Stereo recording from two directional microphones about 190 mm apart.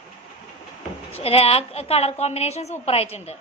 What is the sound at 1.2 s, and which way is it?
A woman's voice, 30° left (ahead or behind).